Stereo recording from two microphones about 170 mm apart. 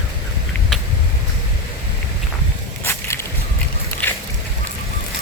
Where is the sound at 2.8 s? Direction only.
15° left (ahead or behind).